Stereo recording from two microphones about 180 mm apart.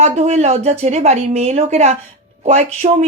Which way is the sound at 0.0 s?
40° right (ahead or behind).